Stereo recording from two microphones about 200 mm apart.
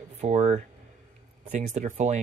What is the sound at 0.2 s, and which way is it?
Speech, 35° right (ahead or behind).